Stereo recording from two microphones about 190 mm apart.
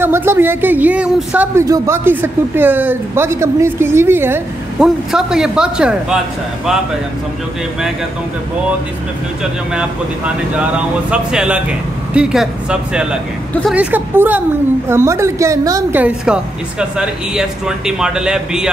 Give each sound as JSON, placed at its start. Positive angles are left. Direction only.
{"t": 0.0, "sound": "speech", "side_deg": -10}
{"t": 9.4, "sound": "a woman's voice", "side_deg": -5}
{"t": 13.7, "sound": "speech", "side_deg": -10}